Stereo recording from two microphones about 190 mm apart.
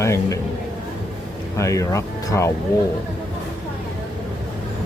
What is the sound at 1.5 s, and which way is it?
A man's voice, 15° left (ahead or behind).